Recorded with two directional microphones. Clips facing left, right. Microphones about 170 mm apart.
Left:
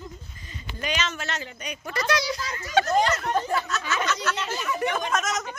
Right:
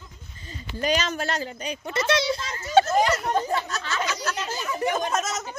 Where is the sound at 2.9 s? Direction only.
10° right (ahead or behind).